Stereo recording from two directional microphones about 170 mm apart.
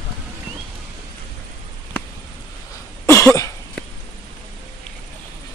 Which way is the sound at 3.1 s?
15° left (ahead or behind).